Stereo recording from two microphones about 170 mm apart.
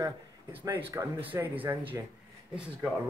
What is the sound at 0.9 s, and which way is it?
Speech, 10° right (ahead or behind).